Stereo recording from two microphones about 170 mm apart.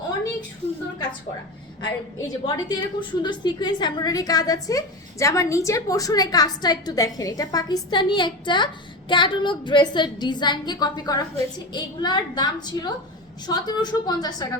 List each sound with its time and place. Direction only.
1.8 s a woman's voice: 25° left (ahead or behind)